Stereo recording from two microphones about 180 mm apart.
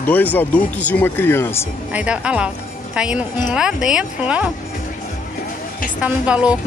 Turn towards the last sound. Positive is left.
turn(degrees=-5)  # may be behind; listen again after turning